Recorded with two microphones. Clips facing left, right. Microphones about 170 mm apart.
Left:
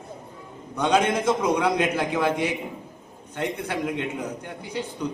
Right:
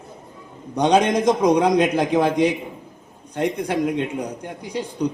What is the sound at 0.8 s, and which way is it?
Speech, 15° right (ahead or behind).